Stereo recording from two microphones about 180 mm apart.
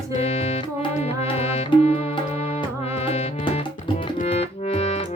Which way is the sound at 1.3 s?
35° left (ahead or behind).